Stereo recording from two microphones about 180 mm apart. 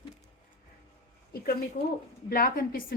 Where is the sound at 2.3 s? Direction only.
55° left (ahead or behind).